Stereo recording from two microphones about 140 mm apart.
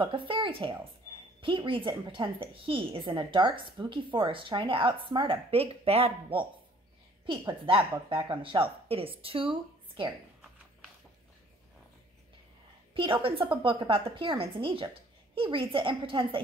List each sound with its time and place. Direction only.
0.0 s a woman's voice: 40° right (ahead or behind)
12.9 s a woman's voice: 35° right (ahead or behind)